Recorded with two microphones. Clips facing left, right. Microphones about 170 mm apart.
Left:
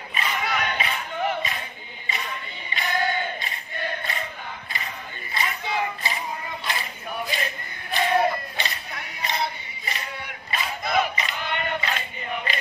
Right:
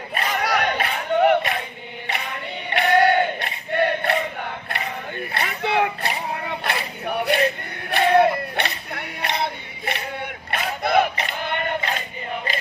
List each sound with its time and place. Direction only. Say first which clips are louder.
0.1 s a sound: right 5 dB; 65° right (ahead or behind)
2.1 s music: right 4 dB; 70° right (ahead or behind)
2.7 s battle cry: right 9 dB; 70° right (ahead or behind)
4.6 s male singing: right 7 dB; 65° right (ahead or behind)